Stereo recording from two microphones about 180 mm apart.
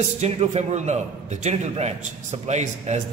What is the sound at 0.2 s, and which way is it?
A man's voice, 40° right (ahead or behind).